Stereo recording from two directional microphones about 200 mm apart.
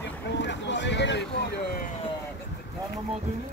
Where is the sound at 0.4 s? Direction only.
65° left (ahead or behind).